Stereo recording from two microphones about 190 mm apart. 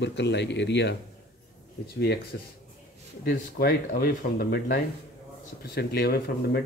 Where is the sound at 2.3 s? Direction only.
65° left (ahead or behind).